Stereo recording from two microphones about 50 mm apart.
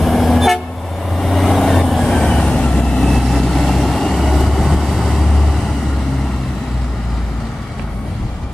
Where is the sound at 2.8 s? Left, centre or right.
Centre.